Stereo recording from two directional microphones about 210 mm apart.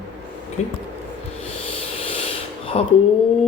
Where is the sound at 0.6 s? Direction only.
30° left (ahead or behind).